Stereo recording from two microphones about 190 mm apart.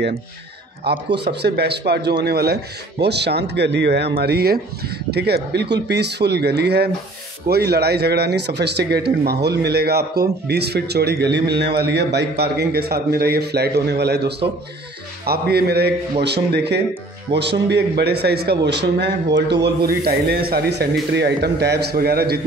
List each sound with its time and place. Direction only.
0.8 s speech: 60° right (ahead or behind)